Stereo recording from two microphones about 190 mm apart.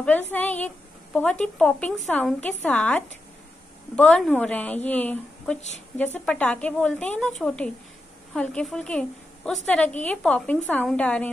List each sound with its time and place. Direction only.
0.0 s a woman's voice: 10° left (ahead or behind)